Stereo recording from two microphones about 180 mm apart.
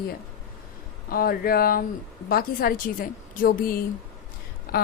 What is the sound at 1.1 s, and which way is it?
A woman's voice, 55° left (ahead or behind).